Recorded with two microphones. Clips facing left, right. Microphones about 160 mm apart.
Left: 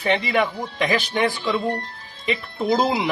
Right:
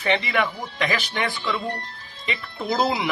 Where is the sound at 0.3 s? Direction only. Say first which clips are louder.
Left 3 dB; 25° left (ahead or behind).